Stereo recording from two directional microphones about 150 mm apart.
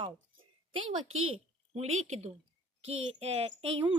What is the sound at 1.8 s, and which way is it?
Speech, 50° right (ahead or behind).